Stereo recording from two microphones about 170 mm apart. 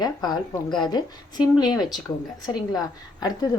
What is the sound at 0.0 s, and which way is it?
A woman's voice, 25° left (ahead or behind).